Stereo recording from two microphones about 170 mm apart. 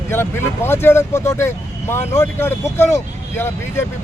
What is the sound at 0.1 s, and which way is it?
Speech, 15° left (ahead or behind).